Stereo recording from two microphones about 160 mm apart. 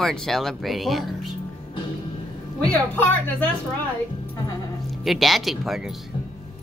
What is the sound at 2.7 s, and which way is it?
Speech, 10° left (ahead or behind).